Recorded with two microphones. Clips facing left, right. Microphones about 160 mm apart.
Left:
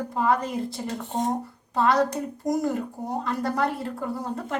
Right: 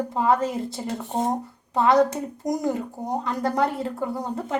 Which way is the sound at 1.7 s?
20° right (ahead or behind).